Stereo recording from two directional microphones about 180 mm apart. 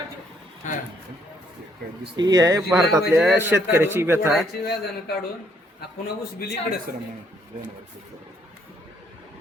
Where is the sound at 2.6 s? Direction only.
Centre (ahead or behind).